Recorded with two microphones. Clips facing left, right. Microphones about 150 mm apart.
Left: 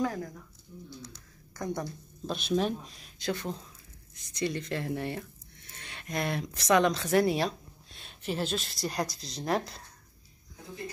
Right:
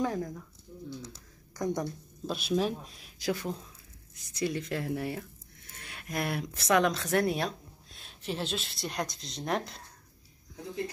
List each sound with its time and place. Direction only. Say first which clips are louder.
0.0 s speech: even; 20° right (ahead or behind)
1.6 s speech: right 3 dB; 15° right (ahead or behind); by 9.8 s centre (ahead or behind)